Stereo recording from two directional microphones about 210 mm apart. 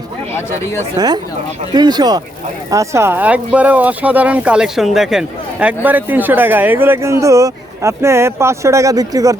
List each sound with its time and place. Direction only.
0.9 s speech: 20° right (ahead or behind)